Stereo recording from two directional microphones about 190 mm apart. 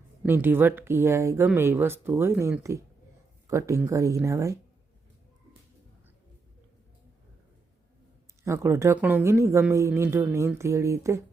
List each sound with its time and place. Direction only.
0.2 s speech: 10° right (ahead or behind)
8.4 s speech: 15° right (ahead or behind)